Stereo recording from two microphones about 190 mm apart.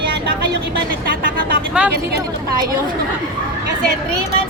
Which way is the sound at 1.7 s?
5° right (ahead or behind).